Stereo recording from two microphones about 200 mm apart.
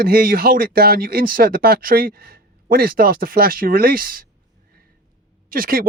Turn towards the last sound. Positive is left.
turn(degrees=-45)  # may be behind; listen again after turning